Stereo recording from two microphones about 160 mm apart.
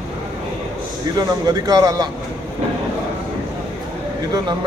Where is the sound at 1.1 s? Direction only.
25° right (ahead or behind).